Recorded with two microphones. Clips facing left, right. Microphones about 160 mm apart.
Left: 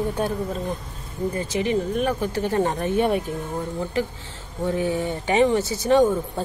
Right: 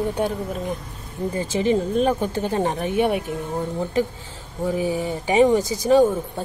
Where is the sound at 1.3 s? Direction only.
30° right (ahead or behind); by 3.2 s 10° right (ahead or behind).